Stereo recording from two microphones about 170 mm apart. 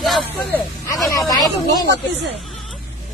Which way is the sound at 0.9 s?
20° left (ahead or behind).